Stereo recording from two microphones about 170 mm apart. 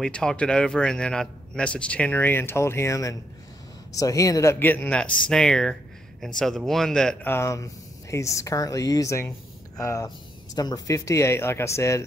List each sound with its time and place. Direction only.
0.0 s a man's voice: 5° left (ahead or behind)
7.3 s speech: 20° left (ahead or behind)